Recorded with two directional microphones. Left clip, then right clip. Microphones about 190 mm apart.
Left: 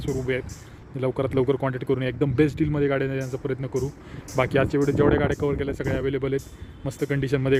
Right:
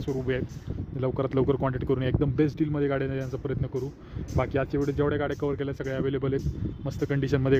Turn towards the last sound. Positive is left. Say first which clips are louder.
# left 2 dB
turn(degrees=-5)  # may be behind; listen again after turning